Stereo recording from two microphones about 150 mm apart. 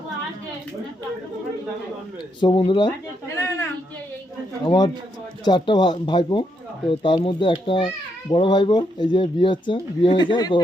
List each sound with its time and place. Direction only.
2.4 s speech: 40° left (ahead or behind)
3.2 s speech: 20° left (ahead or behind)
4.6 s speech: 30° left (ahead or behind)